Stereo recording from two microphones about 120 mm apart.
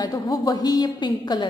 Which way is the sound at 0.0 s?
35° left (ahead or behind).